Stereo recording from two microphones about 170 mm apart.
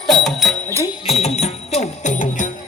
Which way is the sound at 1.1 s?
40° left (ahead or behind).